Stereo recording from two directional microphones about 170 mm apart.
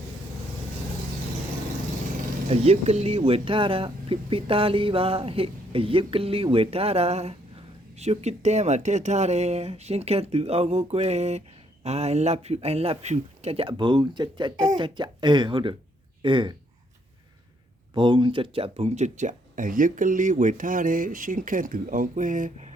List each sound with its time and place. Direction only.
2.5 s speech: 40° right (ahead or behind)
17.9 s speech: 30° right (ahead or behind); by 22.7 s 50° right (ahead or behind)